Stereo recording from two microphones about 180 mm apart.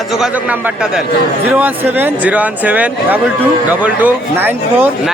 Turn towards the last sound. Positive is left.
turn(degrees=-10)  # may be behind; listen again after turning